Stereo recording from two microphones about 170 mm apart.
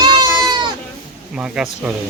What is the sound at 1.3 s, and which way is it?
Speech, 5° right (ahead or behind).